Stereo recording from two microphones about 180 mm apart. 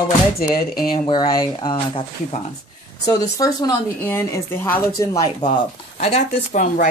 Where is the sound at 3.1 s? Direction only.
20° left (ahead or behind).